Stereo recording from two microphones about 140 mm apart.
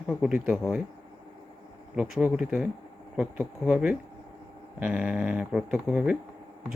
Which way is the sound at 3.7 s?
10° right (ahead or behind).